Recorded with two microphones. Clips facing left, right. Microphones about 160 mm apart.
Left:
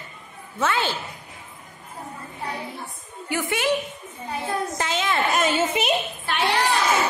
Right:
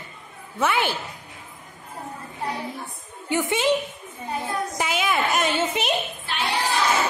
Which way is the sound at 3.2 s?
20° right (ahead or behind).